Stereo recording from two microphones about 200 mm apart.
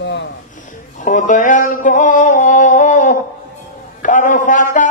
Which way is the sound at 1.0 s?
40° left (ahead or behind).